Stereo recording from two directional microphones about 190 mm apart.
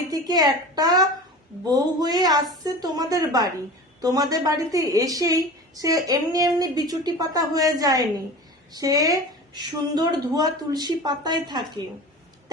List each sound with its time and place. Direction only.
0.1 s a woman's voice: 20° right (ahead or behind)